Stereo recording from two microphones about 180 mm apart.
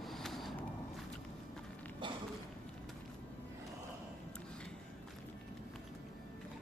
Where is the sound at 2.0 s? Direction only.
25° right (ahead or behind).